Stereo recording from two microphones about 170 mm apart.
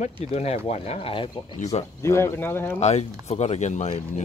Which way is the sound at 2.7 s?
40° left (ahead or behind).